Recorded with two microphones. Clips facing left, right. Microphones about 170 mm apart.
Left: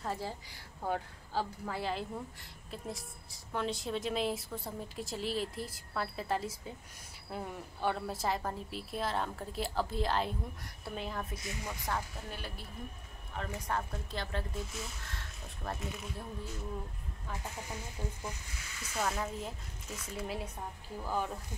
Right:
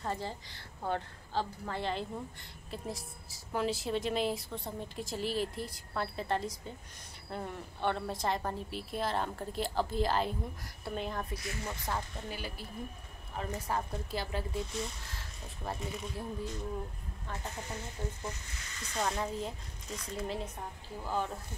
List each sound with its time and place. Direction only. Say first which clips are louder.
0.0 s a woman's voice: right 1 dB; 5° left (ahead or behind)
11.3 s speech: right 2 dB; 20° left (ahead or behind)
12.3 s a woman's voice: right 3 dB; centre (ahead or behind)
13.7 s a woman's voice: right 1 dB; 5° right (ahead or behind)